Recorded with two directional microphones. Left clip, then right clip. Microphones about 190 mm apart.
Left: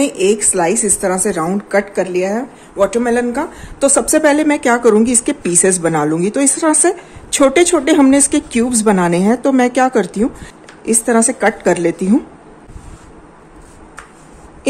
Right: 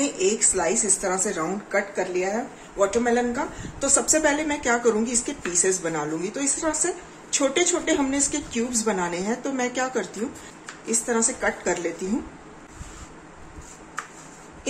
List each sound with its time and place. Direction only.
0.0 s a woman's voice: 50° left (ahead or behind)